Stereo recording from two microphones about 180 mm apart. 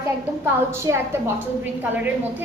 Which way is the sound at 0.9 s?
15° right (ahead or behind).